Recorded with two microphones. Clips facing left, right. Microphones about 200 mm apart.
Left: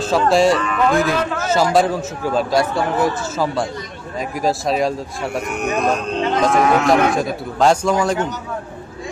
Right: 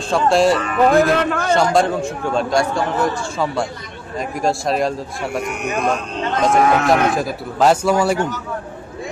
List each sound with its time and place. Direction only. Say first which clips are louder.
0.1 s a man's voice: even; centre (ahead or behind)
0.7 s speech: right 3 dB; 35° right (ahead or behind)
1.0 s a man's voice: right 3 dB; 60° right (ahead or behind)
1.4 s a man's voice: left 3 dB; 5° left (ahead or behind)